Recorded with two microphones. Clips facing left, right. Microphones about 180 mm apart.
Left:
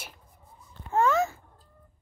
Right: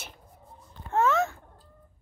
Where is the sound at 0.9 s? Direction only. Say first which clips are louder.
Left 1 dB; centre (ahead or behind).